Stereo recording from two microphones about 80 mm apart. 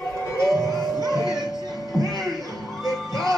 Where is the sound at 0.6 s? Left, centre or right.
Right.